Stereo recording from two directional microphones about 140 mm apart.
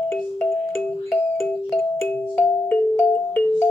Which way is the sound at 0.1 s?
15° left (ahead or behind).